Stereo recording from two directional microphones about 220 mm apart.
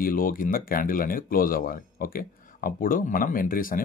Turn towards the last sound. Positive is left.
turn(degrees=40)  # may be behind; listen again after turning